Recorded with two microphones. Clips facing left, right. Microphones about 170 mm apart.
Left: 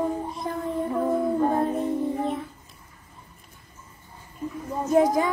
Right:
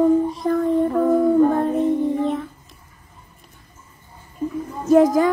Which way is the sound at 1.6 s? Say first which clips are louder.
Right 6 dB; centre (ahead or behind).